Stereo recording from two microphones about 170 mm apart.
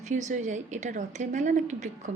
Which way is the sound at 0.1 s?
45° right (ahead or behind).